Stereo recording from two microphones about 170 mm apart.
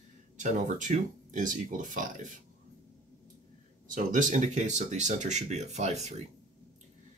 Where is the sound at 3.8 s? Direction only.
50° right (ahead or behind).